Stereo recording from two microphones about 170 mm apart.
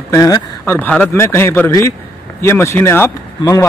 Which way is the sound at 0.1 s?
20° left (ahead or behind).